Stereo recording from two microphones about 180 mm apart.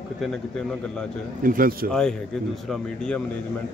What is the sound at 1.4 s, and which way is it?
Speech, 50° right (ahead or behind).